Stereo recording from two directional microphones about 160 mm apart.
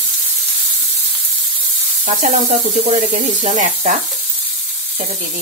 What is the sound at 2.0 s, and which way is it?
Speech, 50° right (ahead or behind).